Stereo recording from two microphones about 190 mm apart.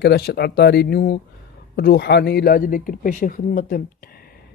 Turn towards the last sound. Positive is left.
turn(degrees=45)  # may be behind; listen again after turning